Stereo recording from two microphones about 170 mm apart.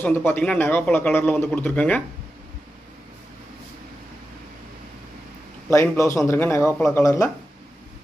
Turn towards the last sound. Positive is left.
turn(degrees=20)  # may be behind; listen again after turning